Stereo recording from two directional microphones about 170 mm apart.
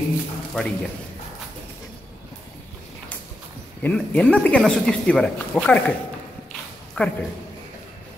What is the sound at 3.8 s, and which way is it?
A man's voice, 5° left (ahead or behind).